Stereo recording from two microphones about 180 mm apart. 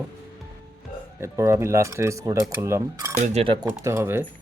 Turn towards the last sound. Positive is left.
turn(degrees=-15)  # may be behind; listen again after turning